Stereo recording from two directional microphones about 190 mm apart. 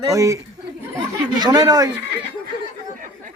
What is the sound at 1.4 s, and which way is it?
Speech, 20° right (ahead or behind).